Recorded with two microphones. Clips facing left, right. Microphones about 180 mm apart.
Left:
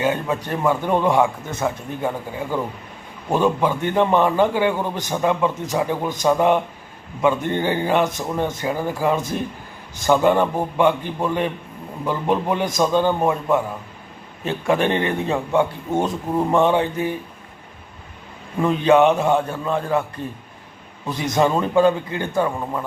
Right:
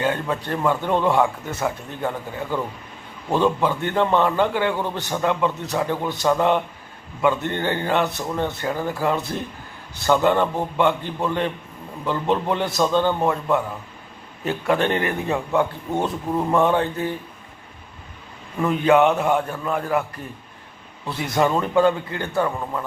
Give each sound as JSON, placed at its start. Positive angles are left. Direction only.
{"t": 0.0, "sound": "a man's voice", "side_deg": 10}
{"t": 15.9, "sound": "a man's voice", "side_deg": 10}
{"t": 16.5, "sound": "a man's voice", "side_deg": 20}
{"t": 18.6, "sound": "a man's voice", "side_deg": 20}
{"t": 21.3, "sound": "a man's voice", "side_deg": 20}